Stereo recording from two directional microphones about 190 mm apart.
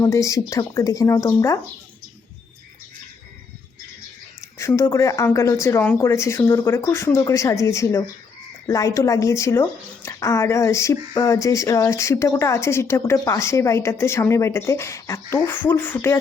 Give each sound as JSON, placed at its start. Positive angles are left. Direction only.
{"t": 0.0, "sound": "speech", "side_deg": 15}
{"t": 4.5, "sound": "speech", "side_deg": 15}